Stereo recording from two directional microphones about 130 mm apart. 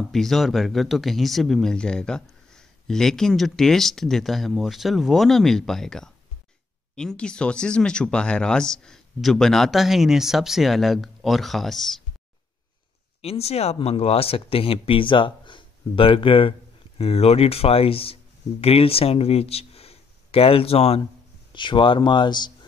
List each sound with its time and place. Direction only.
0.0 s speech: centre (ahead or behind)
13.2 s speech: 50° left (ahead or behind)
21.5 s speech: 40° left (ahead or behind)